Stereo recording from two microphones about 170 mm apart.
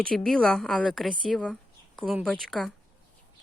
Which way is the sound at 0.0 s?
5° left (ahead or behind).